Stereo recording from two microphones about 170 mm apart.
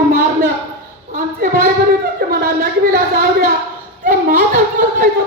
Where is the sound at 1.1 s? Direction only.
55° right (ahead or behind).